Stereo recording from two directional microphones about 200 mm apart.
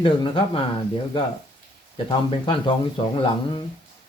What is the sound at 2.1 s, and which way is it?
Speech, 25° left (ahead or behind).